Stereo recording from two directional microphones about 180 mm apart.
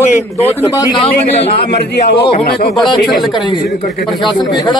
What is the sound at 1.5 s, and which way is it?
Speech, 65° left (ahead or behind).